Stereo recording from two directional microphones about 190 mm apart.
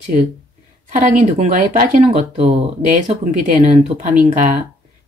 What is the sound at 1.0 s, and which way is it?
Speech, 40° right (ahead or behind).